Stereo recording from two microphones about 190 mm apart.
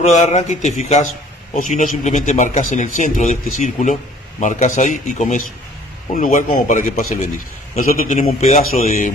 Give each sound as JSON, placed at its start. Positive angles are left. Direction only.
{"t": 0.0, "sound": "speech", "side_deg": 35}